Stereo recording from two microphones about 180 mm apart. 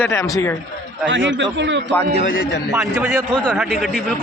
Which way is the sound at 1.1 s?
90° right.